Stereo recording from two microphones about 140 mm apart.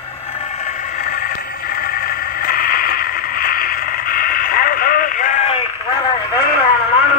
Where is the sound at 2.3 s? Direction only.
90° left.